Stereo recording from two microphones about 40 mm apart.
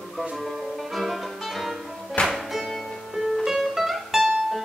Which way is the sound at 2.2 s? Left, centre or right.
Left.